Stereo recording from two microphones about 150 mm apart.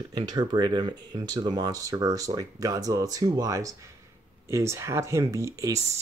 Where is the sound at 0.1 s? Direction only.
30° right (ahead or behind).